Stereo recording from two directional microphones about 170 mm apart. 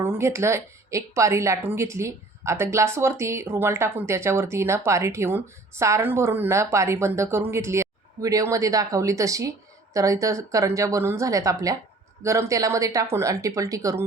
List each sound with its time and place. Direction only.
0.0 s a woman's voice: 15° right (ahead or behind)